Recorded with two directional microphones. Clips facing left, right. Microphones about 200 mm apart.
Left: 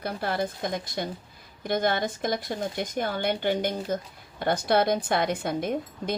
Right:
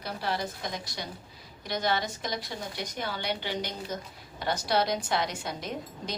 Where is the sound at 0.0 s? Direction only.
55° left (ahead or behind).